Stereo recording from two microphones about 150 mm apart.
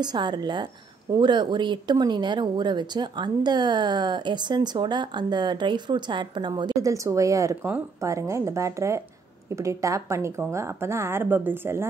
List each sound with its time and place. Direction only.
0.0 s speech: 30° right (ahead or behind)